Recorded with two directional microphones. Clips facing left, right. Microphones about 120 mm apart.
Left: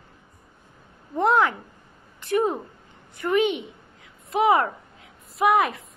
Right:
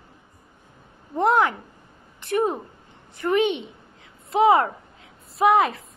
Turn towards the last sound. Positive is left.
turn(degrees=-25)  # may be behind; listen again after turning